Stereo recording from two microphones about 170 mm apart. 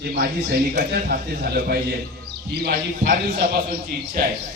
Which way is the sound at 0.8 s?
60° right (ahead or behind).